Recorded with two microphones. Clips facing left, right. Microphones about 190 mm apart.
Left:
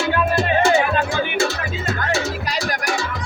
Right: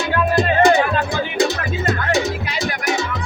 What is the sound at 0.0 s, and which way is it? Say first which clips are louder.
Music: right 2 dB; 15° right (ahead or behind).